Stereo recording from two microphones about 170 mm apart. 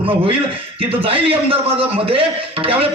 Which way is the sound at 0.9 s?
35° right (ahead or behind).